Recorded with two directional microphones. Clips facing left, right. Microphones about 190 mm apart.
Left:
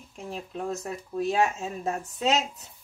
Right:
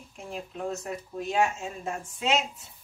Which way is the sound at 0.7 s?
35° left (ahead or behind).